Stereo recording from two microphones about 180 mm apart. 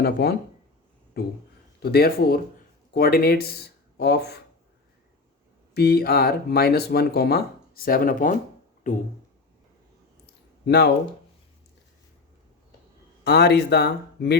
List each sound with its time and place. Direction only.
0.0 s speech: 60° left (ahead or behind)
5.7 s speech: 60° left (ahead or behind)
8.9 s a sound: 45° left (ahead or behind)
10.7 s speech: 70° left (ahead or behind)
13.2 s speech: 65° left (ahead or behind)